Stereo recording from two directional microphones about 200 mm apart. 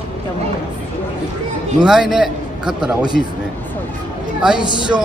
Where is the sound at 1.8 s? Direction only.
5° right (ahead or behind).